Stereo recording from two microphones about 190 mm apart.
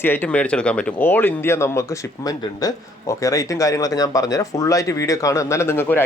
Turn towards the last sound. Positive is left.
turn(degrees=10)  # may be behind; listen again after turning